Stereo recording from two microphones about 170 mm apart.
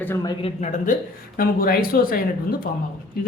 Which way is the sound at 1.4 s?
60° left (ahead or behind).